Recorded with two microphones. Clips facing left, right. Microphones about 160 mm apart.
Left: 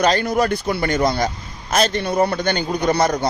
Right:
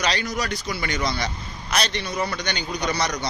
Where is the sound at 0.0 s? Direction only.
50° left (ahead or behind).